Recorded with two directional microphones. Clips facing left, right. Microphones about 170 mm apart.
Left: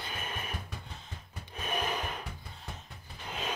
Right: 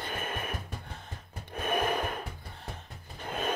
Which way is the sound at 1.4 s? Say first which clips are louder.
Right 5 dB; 55° right (ahead or behind).